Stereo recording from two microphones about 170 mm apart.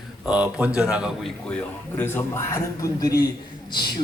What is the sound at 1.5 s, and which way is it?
A man's voice, 10° left (ahead or behind).